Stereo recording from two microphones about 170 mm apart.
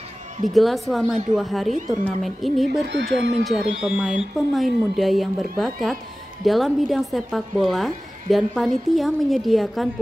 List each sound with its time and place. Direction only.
0.5 s speech: centre (ahead or behind)
2.9 s speech: 90° right
3.4 s speech: centre (ahead or behind)